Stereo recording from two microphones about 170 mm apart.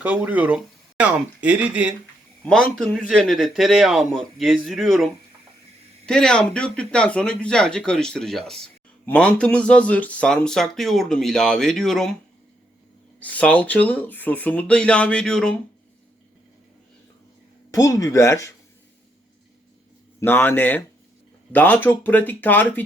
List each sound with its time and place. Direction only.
0.0 s speech: 10° right (ahead or behind)
2.4 s speech: 5° left (ahead or behind)
13.1 s speech: 10° left (ahead or behind)
17.7 s speech: 20° left (ahead or behind)
20.1 s speech: 10° left (ahead or behind)